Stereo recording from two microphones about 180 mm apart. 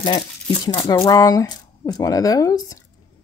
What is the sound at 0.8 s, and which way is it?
Speech, 20° left (ahead or behind).